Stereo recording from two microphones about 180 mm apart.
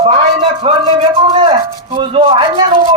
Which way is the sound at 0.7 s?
35° right (ahead or behind).